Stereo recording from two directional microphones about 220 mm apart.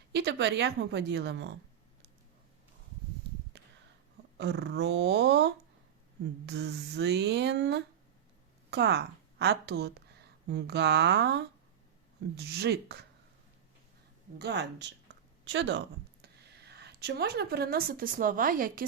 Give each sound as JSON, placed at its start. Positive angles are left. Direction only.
{"t": 0.1, "sound": "a woman's voice", "side_deg": -50}
{"t": 3.5, "sound": "a sound", "side_deg": -50}
{"t": 4.4, "sound": "a woman's voice", "side_deg": -50}
{"t": 14.3, "sound": "a woman's voice", "side_deg": -50}